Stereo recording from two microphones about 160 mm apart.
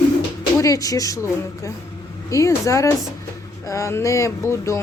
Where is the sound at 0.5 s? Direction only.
20° left (ahead or behind).